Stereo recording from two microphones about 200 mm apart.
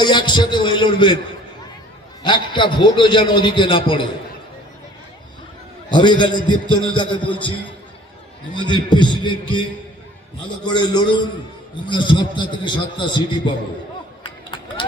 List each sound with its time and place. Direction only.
0.0 s a man's voice: 25° left (ahead or behind)
2.2 s a man's voice: 25° left (ahead or behind)
5.9 s a man's voice: 20° left (ahead or behind)
8.5 s a man's voice: 20° left (ahead or behind)
10.7 s a man's voice: 20° left (ahead or behind)
14.3 s a sound: 25° left (ahead or behind)